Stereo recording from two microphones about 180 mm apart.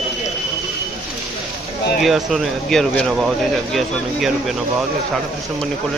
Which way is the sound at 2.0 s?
Centre (ahead or behind).